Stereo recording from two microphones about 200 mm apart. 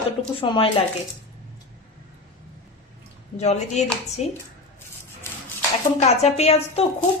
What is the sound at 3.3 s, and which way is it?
A woman's voice, 35° left (ahead or behind).